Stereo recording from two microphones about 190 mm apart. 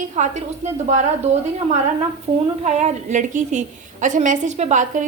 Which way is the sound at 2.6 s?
35° right (ahead or behind).